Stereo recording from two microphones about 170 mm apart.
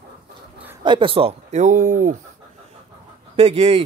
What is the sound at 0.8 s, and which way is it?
Speech, 30° right (ahead or behind).